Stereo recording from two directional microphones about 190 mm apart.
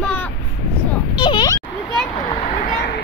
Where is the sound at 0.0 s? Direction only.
5° left (ahead or behind).